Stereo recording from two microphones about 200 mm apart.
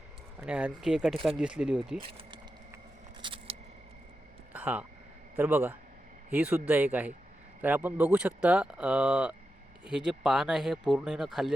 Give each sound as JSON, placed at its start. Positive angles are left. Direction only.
{"t": 0.3, "sound": "speech", "side_deg": -5}
{"t": 2.0, "sound": "speech", "side_deg": -25}
{"t": 3.2, "sound": "single-lens reflex camera", "side_deg": -25}
{"t": 4.5, "sound": "speech", "side_deg": -5}